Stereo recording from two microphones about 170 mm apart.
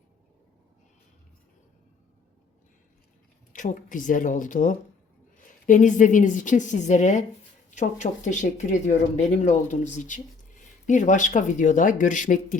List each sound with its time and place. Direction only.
3.5 s speech: 50° left (ahead or behind)